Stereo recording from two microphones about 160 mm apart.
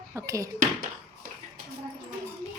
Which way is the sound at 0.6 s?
60° right (ahead or behind).